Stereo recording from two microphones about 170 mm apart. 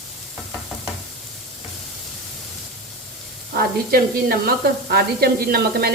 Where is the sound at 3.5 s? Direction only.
60° right (ahead or behind).